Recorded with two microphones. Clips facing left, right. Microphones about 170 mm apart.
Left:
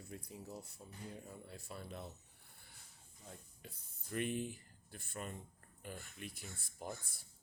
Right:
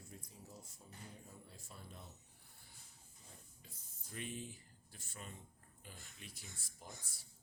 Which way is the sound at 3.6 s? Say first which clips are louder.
Left 6 dB; 65° left (ahead or behind).